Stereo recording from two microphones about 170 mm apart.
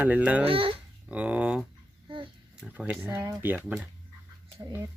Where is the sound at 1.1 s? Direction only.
10° right (ahead or behind).